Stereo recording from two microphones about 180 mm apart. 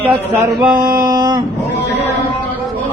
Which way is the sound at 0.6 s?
25° right (ahead or behind).